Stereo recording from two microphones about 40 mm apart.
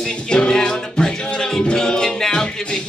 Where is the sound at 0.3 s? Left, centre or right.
Left.